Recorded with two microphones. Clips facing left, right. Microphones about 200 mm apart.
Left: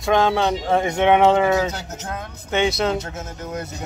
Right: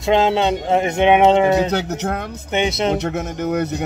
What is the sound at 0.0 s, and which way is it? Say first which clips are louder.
Speech: right 2 dB; 25° right (ahead or behind).